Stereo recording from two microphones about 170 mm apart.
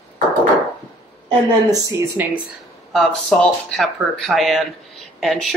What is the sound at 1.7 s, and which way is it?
Speech, 20° right (ahead or behind).